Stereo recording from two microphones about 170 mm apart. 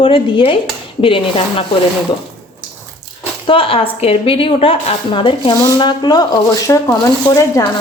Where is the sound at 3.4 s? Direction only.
30° left (ahead or behind).